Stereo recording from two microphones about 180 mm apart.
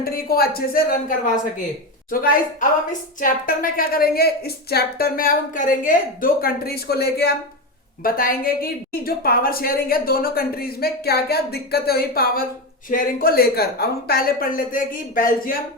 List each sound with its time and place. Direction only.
0.0 s a woman's voice: 55° left (ahead or behind)